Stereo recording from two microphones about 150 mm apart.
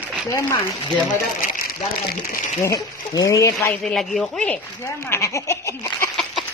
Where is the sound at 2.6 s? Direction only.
20° left (ahead or behind).